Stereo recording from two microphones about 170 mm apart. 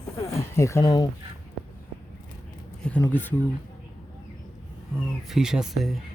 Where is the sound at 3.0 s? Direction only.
10° left (ahead or behind).